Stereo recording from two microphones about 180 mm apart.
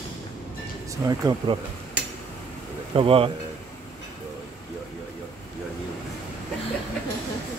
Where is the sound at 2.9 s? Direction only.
30° right (ahead or behind).